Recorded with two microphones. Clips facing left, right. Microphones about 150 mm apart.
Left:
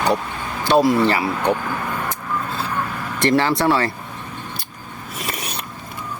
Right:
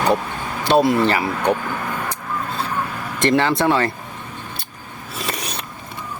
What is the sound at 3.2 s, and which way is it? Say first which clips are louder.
Speech: even; 20° right (ahead or behind).